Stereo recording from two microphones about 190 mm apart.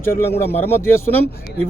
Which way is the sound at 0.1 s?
55° left (ahead or behind).